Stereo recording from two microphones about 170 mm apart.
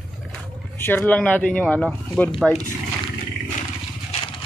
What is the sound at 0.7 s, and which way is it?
Speech, 15° left (ahead or behind).